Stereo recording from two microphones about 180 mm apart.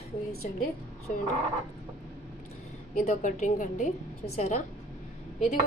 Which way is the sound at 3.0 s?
40° left (ahead or behind).